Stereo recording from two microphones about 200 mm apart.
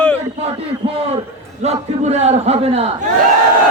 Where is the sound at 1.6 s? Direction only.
35° right (ahead or behind).